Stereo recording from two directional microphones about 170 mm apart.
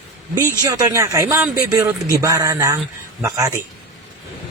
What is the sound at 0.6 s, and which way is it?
A man's voice, 20° right (ahead or behind).